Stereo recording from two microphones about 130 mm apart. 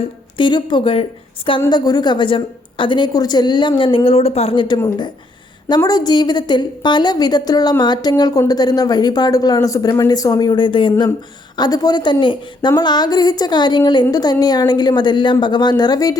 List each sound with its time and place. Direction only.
0.3 s a woman's voice: 35° left (ahead or behind)
5.6 s a woman's voice: 30° left (ahead or behind)